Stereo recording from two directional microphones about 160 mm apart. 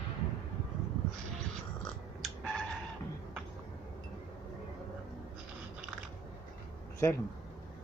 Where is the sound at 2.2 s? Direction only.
Centre (ahead or behind).